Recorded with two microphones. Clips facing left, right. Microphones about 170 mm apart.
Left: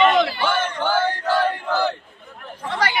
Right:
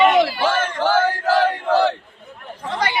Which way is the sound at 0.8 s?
90° right.